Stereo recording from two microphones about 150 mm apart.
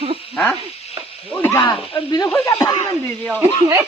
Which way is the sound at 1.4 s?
20° left (ahead or behind).